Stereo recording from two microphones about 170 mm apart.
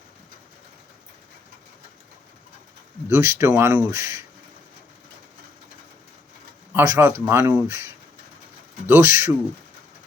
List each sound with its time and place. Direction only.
3.1 s speech: 20° right (ahead or behind)
6.7 s speech: 15° right (ahead or behind)
8.9 s speech: 15° right (ahead or behind)